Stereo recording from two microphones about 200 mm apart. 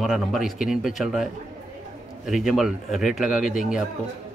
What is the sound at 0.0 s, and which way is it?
A man's voice, centre (ahead or behind).